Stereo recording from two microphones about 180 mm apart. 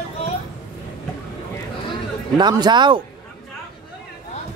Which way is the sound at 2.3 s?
25° right (ahead or behind).